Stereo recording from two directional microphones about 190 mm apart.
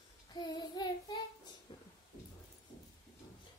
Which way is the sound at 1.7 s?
25° left (ahead or behind).